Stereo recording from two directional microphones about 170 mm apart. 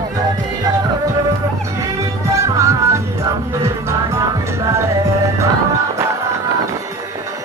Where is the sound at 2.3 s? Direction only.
15° right (ahead or behind).